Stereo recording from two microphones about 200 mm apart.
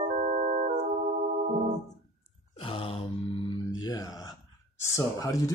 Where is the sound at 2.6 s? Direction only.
25° left (ahead or behind).